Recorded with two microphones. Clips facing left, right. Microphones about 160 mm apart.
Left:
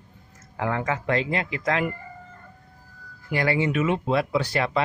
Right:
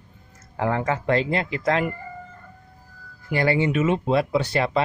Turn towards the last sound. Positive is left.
turn(degrees=-30)  # may be behind; listen again after turning